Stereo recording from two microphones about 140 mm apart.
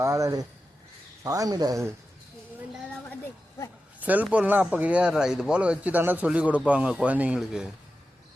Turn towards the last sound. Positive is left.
turn(degrees=-5)  # may be behind; listen again after turning